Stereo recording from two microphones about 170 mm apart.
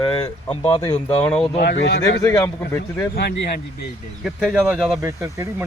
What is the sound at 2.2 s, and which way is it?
Speech, 15° left (ahead or behind).